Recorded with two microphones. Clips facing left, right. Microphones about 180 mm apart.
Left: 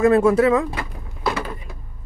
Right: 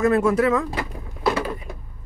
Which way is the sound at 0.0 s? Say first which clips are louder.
Left 3 dB; 30° left (ahead or behind).